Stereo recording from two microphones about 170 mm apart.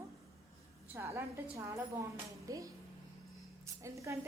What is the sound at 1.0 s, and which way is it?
A woman's voice, 15° right (ahead or behind).